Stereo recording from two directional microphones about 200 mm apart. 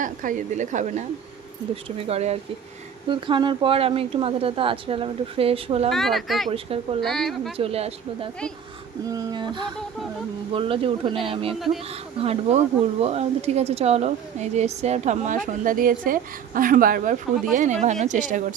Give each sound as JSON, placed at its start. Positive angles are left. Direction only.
{"t": 0.0, "sound": "a woman's voice", "side_deg": -40}
{"t": 5.9, "sound": "speech", "side_deg": 0}
{"t": 6.5, "sound": "a woman's voice", "side_deg": -30}
{"t": 7.0, "sound": "speech", "side_deg": 0}
{"t": 7.5, "sound": "a woman's voice", "side_deg": -30}
{"t": 9.0, "sound": "a woman's voice", "side_deg": -20}